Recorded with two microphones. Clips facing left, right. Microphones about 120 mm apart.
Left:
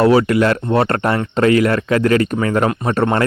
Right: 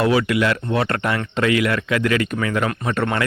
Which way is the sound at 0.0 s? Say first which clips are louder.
Left 5 dB; 40° left (ahead or behind).